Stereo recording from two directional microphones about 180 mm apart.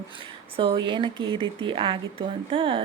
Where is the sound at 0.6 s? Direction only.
30° right (ahead or behind).